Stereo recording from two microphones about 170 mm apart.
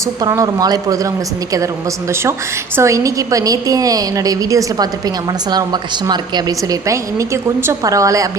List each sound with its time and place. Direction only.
0.2 s a woman's voice: 20° right (ahead or behind)
2.7 s a woman's voice: 20° right (ahead or behind)